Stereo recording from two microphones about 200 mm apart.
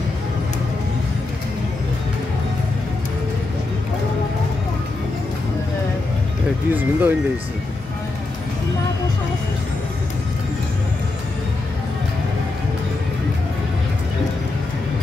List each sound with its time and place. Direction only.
6.7 s speech: 10° right (ahead or behind)